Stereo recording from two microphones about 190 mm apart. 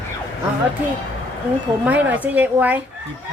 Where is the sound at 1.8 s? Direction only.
10° right (ahead or behind).